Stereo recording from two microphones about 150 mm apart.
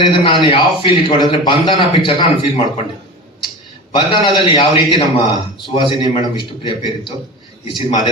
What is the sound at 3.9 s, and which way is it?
A man's voice, 30° left (ahead or behind).